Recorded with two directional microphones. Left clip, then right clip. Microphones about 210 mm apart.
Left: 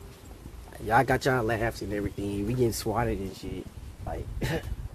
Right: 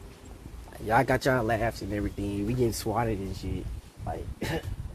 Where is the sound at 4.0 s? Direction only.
10° right (ahead or behind).